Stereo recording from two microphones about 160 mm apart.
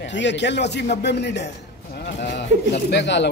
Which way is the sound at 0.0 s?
90° left.